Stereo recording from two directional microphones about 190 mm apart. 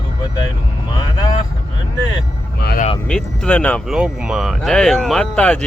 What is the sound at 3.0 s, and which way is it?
Speech, 5° left (ahead or behind).